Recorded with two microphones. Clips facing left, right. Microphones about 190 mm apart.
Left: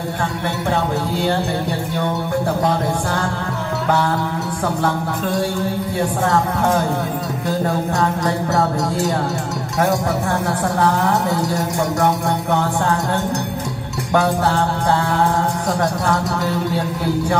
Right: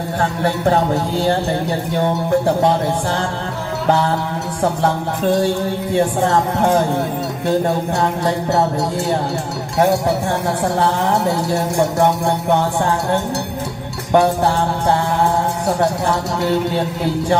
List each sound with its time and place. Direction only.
14.1 s music: 20° right (ahead or behind)